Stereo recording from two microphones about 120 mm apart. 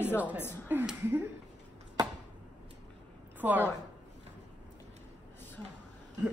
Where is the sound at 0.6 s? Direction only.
15° right (ahead or behind).